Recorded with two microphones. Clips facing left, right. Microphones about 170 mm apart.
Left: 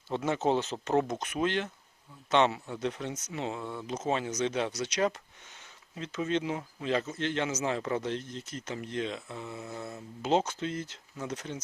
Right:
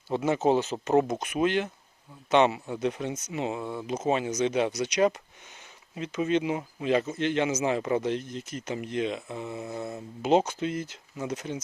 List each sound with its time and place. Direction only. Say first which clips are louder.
0.1 s speech: right 4 dB; 10° right (ahead or behind)